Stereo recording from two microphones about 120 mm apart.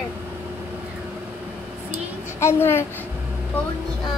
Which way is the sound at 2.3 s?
20° left (ahead or behind).